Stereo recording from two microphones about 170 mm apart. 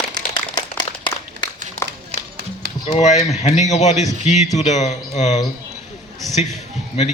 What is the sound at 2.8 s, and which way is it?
A man's voice, 40° left (ahead or behind).